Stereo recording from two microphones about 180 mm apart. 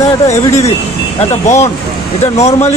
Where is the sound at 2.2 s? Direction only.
35° left (ahead or behind).